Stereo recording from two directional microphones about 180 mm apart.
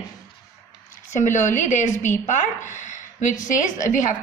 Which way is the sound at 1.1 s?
45° left (ahead or behind).